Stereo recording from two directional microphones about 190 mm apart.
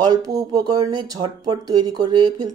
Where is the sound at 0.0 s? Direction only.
20° right (ahead or behind).